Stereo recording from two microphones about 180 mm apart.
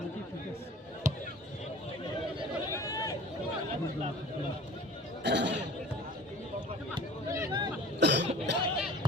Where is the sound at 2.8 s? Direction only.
20° left (ahead or behind).